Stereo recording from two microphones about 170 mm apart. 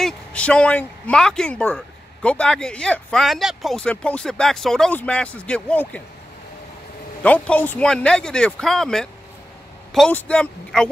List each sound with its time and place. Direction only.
0.0 s speech: 5° left (ahead or behind)
7.2 s speech: 10° left (ahead or behind)